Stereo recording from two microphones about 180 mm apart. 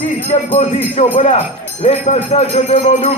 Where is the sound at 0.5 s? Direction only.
35° left (ahead or behind).